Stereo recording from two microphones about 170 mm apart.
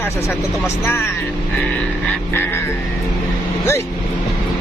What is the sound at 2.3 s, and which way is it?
Speech, 15° left (ahead or behind).